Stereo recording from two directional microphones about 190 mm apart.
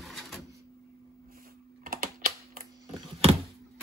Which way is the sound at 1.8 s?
45° right (ahead or behind).